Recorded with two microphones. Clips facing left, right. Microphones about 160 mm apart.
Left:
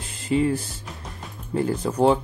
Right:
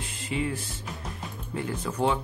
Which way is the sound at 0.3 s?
40° left (ahead or behind).